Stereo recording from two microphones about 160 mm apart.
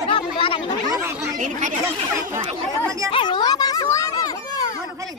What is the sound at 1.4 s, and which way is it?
Speech, 50° right (ahead or behind).